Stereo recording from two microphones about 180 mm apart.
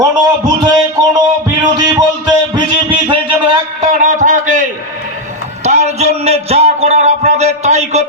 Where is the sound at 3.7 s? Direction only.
45° right (ahead or behind).